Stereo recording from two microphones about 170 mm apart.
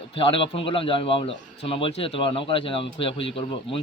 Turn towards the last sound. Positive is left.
turn(degrees=30)  # may be behind; listen again after turning